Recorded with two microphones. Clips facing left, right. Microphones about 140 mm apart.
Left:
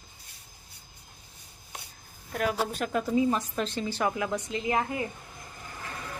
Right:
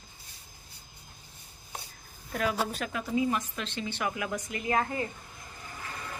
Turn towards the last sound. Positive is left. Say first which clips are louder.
# left 1 dB
turn(degrees=20)  # may be behind; listen again after turning